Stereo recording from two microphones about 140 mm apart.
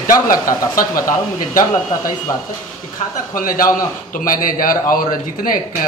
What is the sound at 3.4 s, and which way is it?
A man's voice, 85° left.